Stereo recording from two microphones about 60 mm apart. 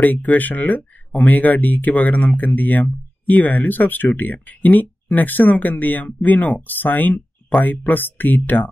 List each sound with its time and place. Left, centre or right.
0.0 s speech: left